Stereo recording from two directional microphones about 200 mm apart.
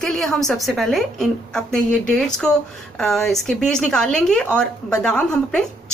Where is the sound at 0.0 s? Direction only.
Centre (ahead or behind).